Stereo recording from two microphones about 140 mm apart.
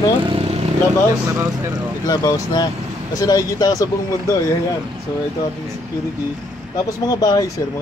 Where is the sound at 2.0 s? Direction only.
25° left (ahead or behind).